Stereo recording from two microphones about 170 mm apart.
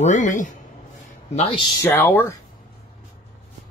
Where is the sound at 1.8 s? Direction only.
10° left (ahead or behind).